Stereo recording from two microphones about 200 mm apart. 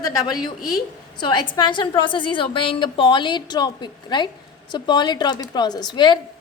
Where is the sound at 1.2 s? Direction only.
25° left (ahead or behind).